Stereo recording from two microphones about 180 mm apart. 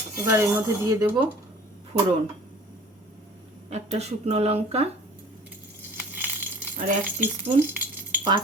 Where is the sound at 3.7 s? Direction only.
35° right (ahead or behind).